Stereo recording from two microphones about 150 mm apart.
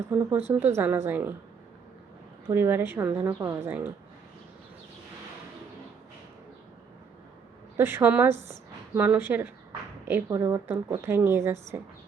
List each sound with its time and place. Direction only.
0.1 s a woman's voice: 10° right (ahead or behind)
2.5 s a woman's voice: 15° right (ahead or behind)
7.8 s a woman's voice: 15° right (ahead or behind)